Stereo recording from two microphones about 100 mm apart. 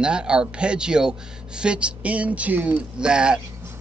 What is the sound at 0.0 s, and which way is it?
Speech, 10° right (ahead or behind).